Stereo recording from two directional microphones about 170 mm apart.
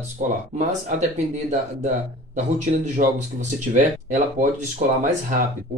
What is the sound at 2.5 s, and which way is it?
Speech, 45° right (ahead or behind).